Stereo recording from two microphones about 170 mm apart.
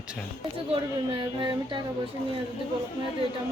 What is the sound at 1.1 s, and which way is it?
Child singing, 30° right (ahead or behind).